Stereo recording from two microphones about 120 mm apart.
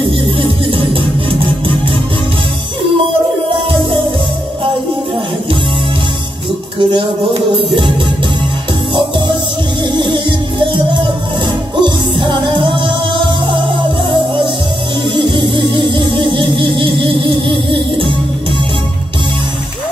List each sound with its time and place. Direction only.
0.4 s music: 45° right (ahead or behind)
6.8 s music: 45° right (ahead or behind)
9.9 s music: 40° right (ahead or behind)